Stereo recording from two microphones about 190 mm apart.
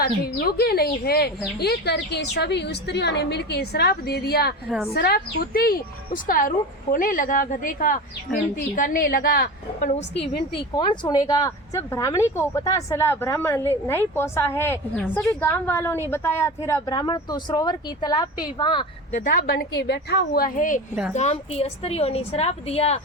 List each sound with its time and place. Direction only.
0.0 s a woman's voice: 55° left (ahead or behind)
10.8 s speech: 20° left (ahead or behind)
19.1 s a woman's voice: 45° left (ahead or behind)
19.9 s a woman's voice: 60° left (ahead or behind); by 23.0 s 30° left (ahead or behind)